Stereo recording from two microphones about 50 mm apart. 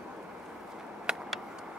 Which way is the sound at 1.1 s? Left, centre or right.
Centre.